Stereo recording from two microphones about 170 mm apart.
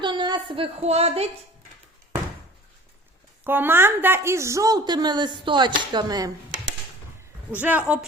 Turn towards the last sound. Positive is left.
turn(degrees=-10)  # may be behind; listen again after turning